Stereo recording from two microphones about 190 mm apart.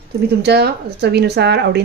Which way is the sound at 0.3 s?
60° right (ahead or behind).